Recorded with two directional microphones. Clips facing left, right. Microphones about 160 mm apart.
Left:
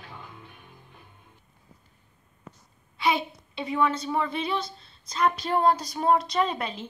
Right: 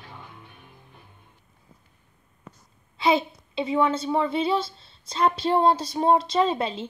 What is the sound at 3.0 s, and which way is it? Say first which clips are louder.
A woman's voice: right 4 dB; 25° right (ahead or behind).